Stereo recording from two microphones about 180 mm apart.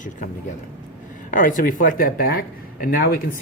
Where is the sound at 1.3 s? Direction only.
50° left (ahead or behind).